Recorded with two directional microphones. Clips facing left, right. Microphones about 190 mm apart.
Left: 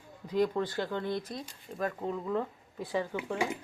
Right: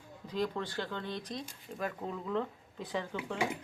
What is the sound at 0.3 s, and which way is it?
Speech, 10° left (ahead or behind).